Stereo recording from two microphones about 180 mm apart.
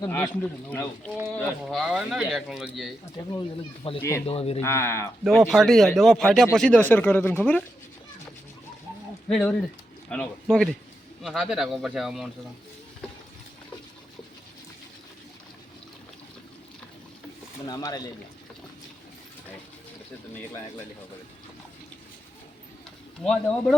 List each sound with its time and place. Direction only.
0.0 s speech: 10° left (ahead or behind)
3.9 s a man's voice: 30° left (ahead or behind)
4.6 s speech: 15° left (ahead or behind)
5.5 s speech: centre (ahead or behind)
9.3 s speech: 5° left (ahead or behind)
17.7 s speech: 20° left (ahead or behind)
23.2 s speech: 5° left (ahead or behind)